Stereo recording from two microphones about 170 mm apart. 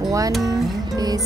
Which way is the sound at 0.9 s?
20° right (ahead or behind).